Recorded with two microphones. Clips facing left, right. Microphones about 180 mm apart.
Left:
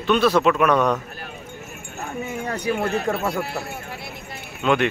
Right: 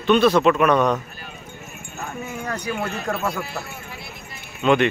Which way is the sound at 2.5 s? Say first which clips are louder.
Left 3 dB; 25° left (ahead or behind).